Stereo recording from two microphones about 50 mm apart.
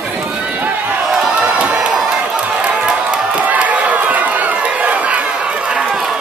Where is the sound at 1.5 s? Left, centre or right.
Right.